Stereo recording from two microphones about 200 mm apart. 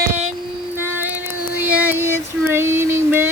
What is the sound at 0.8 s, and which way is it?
Child singing, 10° right (ahead or behind).